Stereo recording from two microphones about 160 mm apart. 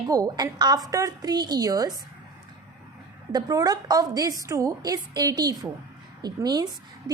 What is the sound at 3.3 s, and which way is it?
A woman's voice, 25° right (ahead or behind).